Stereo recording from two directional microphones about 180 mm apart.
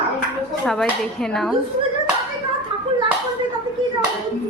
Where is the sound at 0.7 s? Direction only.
5° left (ahead or behind).